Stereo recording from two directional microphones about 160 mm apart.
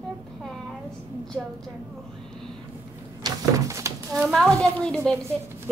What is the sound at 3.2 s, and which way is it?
Speech, 20° right (ahead or behind).